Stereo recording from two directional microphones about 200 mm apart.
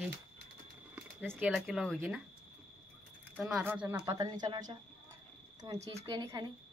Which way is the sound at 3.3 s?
5° right (ahead or behind).